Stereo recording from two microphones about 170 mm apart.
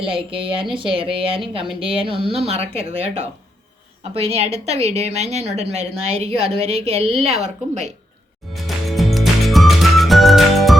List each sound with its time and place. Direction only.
0.0 s a woman's voice: 30° right (ahead or behind)
8.5 s music: centre (ahead or behind)